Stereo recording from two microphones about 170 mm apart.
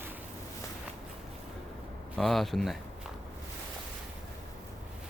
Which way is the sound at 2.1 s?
Centre (ahead or behind).